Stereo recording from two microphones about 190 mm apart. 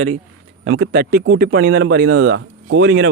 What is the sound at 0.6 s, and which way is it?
Speech, 75° right (ahead or behind).